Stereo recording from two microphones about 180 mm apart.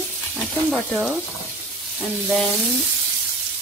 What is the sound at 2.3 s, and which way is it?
Speech, centre (ahead or behind).